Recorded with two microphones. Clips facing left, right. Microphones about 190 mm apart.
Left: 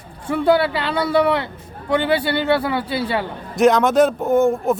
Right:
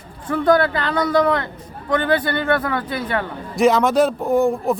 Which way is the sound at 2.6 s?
10° left (ahead or behind).